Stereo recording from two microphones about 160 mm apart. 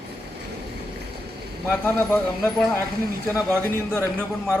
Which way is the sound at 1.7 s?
10° left (ahead or behind).